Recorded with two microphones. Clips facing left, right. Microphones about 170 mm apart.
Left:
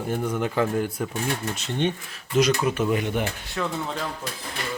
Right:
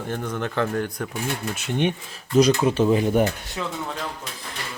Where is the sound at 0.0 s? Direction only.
10° left (ahead or behind).